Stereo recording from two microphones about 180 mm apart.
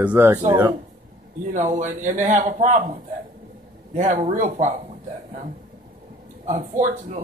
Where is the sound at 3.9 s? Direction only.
40° right (ahead or behind).